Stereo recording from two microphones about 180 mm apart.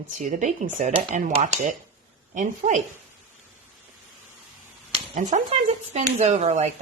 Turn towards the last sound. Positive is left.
turn(degrees=-40)  # may be behind; listen again after turning